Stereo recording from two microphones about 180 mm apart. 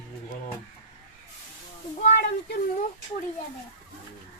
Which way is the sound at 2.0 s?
50° left (ahead or behind).